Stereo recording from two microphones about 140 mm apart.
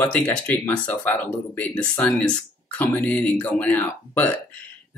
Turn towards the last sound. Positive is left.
turn(degrees=15)  # may be behind; listen again after turning